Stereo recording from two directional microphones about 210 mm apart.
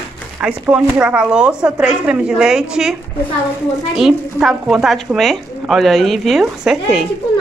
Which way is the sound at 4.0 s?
Centre (ahead or behind).